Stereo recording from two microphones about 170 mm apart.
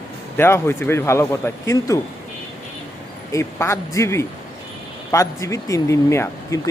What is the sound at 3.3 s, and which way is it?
Speech, 15° left (ahead or behind).